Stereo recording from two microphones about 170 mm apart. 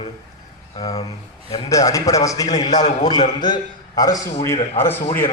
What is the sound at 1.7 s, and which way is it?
A man's voice, 20° left (ahead or behind).